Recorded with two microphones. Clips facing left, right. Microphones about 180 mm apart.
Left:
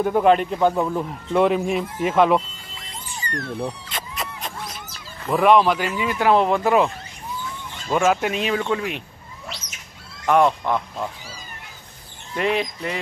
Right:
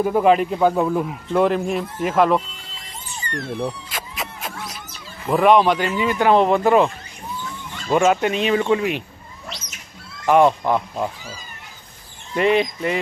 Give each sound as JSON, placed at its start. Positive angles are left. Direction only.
{"t": 0.0, "sound": "speech", "side_deg": 0}
{"t": 3.3, "sound": "speech", "side_deg": -25}
{"t": 3.6, "sound": "a sound", "side_deg": 0}
{"t": 5.2, "sound": "speech", "side_deg": 0}
{"t": 7.9, "sound": "speech", "side_deg": 0}
{"t": 10.2, "sound": "speech", "side_deg": -5}
{"t": 12.4, "sound": "speech", "side_deg": 0}